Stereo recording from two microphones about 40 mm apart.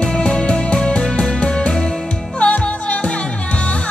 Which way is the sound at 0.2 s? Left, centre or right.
Left.